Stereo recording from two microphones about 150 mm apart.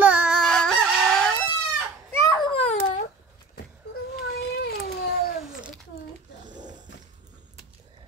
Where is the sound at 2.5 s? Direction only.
50° left (ahead or behind).